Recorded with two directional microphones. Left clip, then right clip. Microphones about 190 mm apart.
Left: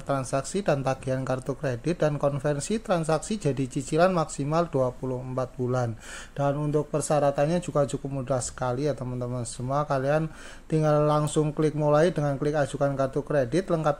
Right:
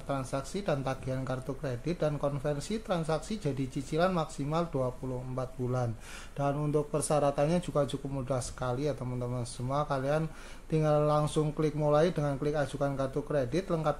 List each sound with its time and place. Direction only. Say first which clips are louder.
0.1 s speech: left 7 dB; 30° left (ahead or behind)
6.3 s speech: left 4 dB; 20° left (ahead or behind)